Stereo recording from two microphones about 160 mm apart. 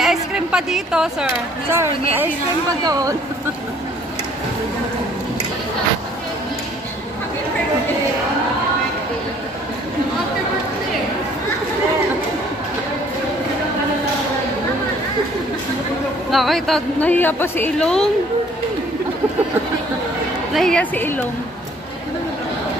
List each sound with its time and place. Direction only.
0.0 s a sound: 5° right (ahead or behind)
1.7 s speech: 15° right (ahead or behind)
16.3 s a woman's voice: centre (ahead or behind)
20.5 s a woman's voice: 5° left (ahead or behind)